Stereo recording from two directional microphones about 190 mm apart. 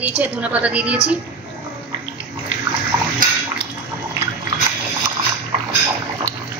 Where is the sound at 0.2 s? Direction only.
5° right (ahead or behind).